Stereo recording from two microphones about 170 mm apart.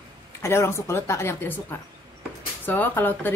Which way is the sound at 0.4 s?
15° left (ahead or behind).